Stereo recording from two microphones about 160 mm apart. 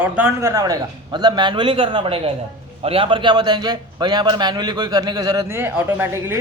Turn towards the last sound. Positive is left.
turn(degrees=-15)  # may be behind; listen again after turning